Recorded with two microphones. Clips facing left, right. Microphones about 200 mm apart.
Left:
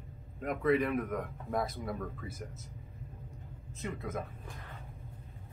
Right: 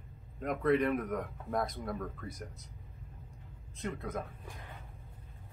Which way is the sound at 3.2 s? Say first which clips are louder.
Left 5 dB; 5° left (ahead or behind).